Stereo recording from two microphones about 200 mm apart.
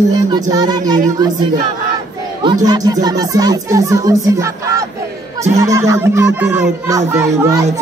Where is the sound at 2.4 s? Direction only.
20° right (ahead or behind).